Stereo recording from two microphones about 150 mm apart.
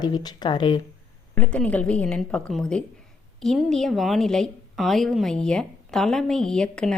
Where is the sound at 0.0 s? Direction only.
25° left (ahead or behind).